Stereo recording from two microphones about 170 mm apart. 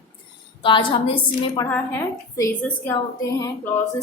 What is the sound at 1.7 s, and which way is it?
Speech, 15° left (ahead or behind).